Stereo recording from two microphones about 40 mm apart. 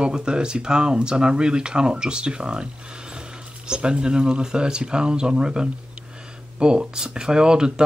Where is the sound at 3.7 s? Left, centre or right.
Right.